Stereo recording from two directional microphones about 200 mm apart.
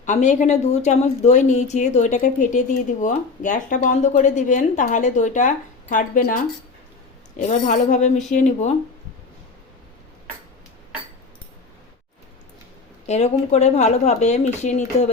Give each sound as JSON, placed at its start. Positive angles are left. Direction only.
{"t": 0.0, "sound": "speech", "side_deg": 40}
{"t": 13.1, "sound": "speech", "side_deg": 35}